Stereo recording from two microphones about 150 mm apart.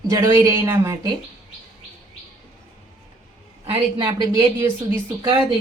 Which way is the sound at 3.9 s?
30° right (ahead or behind).